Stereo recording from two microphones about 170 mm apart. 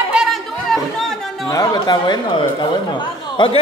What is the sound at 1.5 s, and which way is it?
Speech, 20° left (ahead or behind).